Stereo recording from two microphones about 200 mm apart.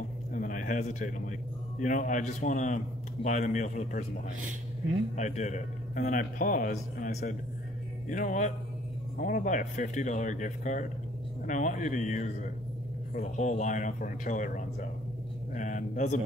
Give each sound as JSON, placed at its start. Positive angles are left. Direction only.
{"t": 0.3, "sound": "a sound", "side_deg": 40}
{"t": 1.8, "sound": "a man's voice", "side_deg": 40}
{"t": 5.1, "sound": "a man's voice", "side_deg": 35}